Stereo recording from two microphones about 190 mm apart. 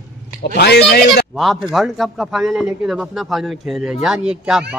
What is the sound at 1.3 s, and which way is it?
A man's voice, centre (ahead or behind).